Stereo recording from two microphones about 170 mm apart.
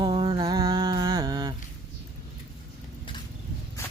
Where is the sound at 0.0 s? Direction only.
25° right (ahead or behind).